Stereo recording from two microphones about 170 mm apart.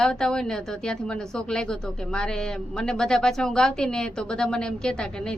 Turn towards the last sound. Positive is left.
turn(degrees=5)  # may be behind; listen again after turning